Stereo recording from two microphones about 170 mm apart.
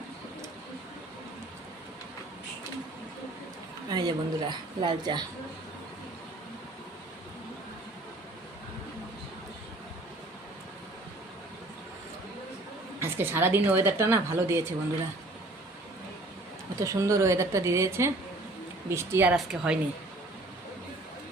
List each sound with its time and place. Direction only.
3.8 s a woman's voice: 25° right (ahead or behind)
13.0 s a woman's voice: 15° right (ahead or behind)
16.8 s a woman's voice: 20° right (ahead or behind)